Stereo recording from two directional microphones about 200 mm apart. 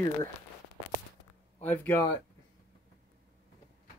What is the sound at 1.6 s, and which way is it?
Speech, 10° left (ahead or behind).